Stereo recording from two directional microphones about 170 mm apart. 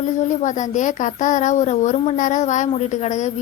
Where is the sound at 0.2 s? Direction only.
45° left (ahead or behind).